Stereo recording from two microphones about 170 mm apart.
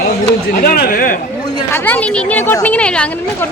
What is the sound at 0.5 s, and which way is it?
Speech, 60° left (ahead or behind).